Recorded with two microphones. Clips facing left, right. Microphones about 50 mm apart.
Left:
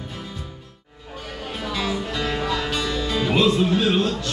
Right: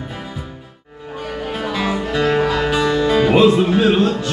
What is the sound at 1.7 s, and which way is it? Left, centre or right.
Music, right.